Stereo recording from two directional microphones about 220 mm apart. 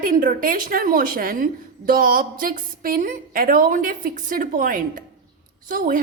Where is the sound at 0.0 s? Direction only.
40° right (ahead or behind).